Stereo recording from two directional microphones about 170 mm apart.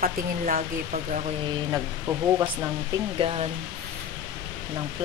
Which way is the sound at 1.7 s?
15° right (ahead or behind).